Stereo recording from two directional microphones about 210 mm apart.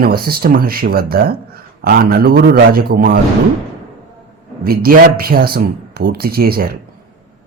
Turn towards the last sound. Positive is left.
turn(degrees=-45)  # may be behind; listen again after turning